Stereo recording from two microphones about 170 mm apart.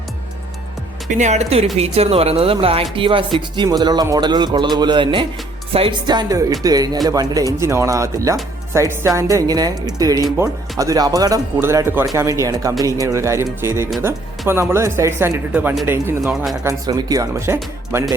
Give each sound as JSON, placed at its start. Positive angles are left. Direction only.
{"t": 1.1, "sound": "speech", "side_deg": -45}
{"t": 15.5, "sound": "speech", "side_deg": -5}
{"t": 16.6, "sound": "speech", "side_deg": -20}